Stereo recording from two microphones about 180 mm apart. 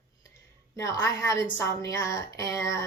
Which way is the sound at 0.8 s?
15° left (ahead or behind).